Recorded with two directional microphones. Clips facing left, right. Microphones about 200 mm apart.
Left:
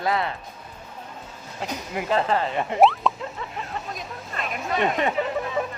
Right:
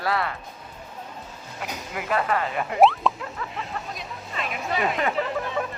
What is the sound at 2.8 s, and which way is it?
Speech, centre (ahead or behind).